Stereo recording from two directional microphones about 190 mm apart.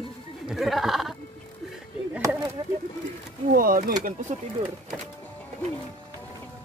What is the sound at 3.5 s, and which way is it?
Speech, 50° right (ahead or behind).